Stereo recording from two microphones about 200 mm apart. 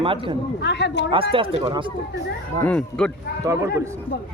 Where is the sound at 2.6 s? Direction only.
5° left (ahead or behind).